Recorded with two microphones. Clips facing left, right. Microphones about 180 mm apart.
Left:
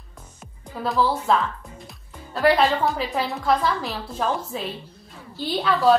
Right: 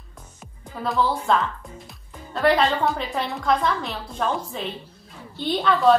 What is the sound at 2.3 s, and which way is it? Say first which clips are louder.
A woman's voice: left 1 dB; centre (ahead or behind).